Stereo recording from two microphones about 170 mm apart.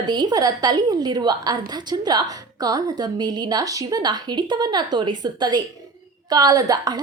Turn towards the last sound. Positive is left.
turn(degrees=-25)  # may be behind; listen again after turning